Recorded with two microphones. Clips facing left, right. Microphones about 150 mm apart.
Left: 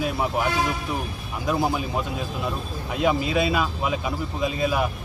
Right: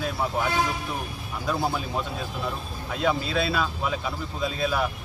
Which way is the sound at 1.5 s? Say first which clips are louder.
Left 3 dB; 15° left (ahead or behind).